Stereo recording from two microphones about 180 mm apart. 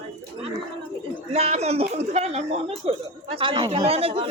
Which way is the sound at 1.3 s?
35° right (ahead or behind).